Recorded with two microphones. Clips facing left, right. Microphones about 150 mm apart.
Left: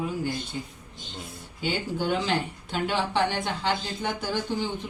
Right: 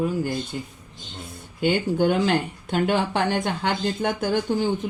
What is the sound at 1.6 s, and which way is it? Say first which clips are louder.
Speech: right 8 dB; 55° right (ahead or behind).